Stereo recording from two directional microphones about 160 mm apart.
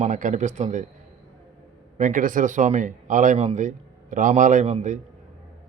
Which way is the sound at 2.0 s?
55° right (ahead or behind).